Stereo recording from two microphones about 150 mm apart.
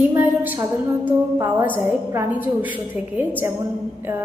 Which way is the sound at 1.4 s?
15° right (ahead or behind).